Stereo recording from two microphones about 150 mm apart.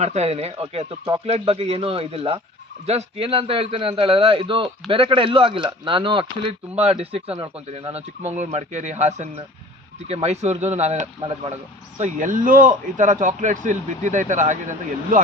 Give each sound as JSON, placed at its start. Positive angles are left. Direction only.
{"t": 0.0, "sound": "a man's voice", "side_deg": -45}
{"t": 11.2, "sound": "a man's voice", "side_deg": -35}
{"t": 11.9, "sound": "a man's voice", "side_deg": -55}